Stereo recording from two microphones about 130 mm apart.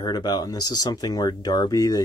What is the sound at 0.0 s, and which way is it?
Speech, 30° left (ahead or behind).